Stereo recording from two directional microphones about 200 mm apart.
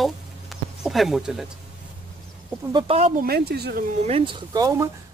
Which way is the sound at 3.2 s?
50° right (ahead or behind).